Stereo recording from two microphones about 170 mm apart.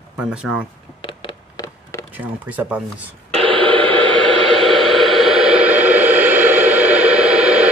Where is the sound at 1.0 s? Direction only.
30° left (ahead or behind).